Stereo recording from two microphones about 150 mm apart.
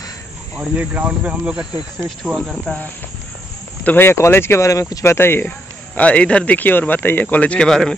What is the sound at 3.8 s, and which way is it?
Speech, 15° left (ahead or behind).